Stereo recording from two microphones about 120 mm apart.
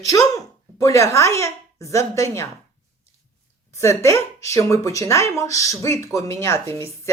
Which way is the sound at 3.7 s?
25° left (ahead or behind).